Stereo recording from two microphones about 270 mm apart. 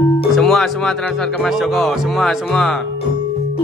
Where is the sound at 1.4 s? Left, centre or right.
Centre.